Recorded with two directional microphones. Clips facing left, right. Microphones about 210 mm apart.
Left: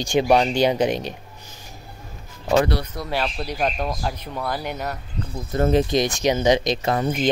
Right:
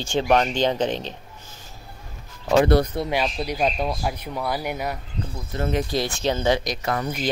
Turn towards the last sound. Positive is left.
turn(degrees=25)  # may be behind; listen again after turning